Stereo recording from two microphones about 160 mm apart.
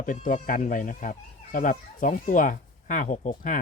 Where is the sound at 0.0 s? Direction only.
55° left (ahead or behind).